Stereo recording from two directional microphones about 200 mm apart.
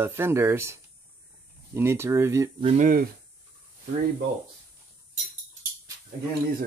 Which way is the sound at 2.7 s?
45° right (ahead or behind).